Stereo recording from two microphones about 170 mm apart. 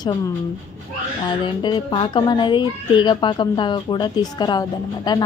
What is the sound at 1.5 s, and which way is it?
Speech, 30° left (ahead or behind).